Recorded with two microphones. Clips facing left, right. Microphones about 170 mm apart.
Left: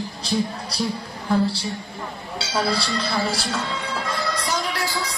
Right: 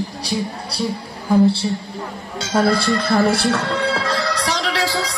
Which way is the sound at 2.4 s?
50° right (ahead or behind).